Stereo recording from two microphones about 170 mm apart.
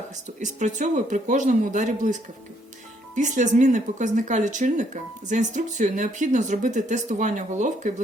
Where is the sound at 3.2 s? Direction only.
45° right (ahead or behind).